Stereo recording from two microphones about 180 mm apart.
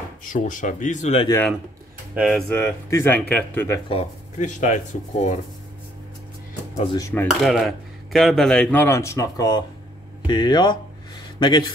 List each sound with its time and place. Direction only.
0.2 s speech: 45° left (ahead or behind)
2.1 s speech: centre (ahead or behind)
2.5 s speech: 15° left (ahead or behind)
3.9 s speech: 40° left (ahead or behind)
7.0 s speech: 15° left (ahead or behind)
7.2 s speech: centre (ahead or behind); by 11.7 s 25° left (ahead or behind)